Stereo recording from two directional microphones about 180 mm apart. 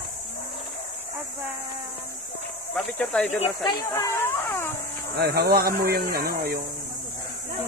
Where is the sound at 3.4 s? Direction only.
25° left (ahead or behind).